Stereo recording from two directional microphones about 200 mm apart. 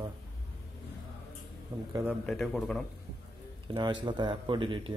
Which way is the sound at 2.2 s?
Centre (ahead or behind).